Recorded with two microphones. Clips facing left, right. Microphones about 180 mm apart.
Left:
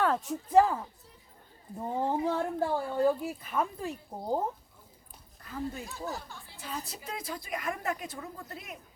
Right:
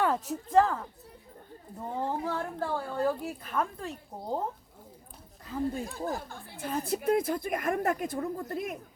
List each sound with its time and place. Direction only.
0.0 s speech: 5° right (ahead or behind)
0.5 s speech: 10° left (ahead or behind)
5.7 s a woman's voice: 50° right (ahead or behind)